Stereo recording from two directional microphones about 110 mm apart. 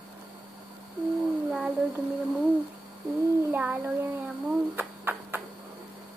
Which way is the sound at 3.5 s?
10° right (ahead or behind).